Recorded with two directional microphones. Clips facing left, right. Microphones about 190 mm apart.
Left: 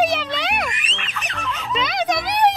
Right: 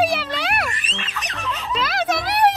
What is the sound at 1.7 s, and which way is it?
Music, 5° right (ahead or behind).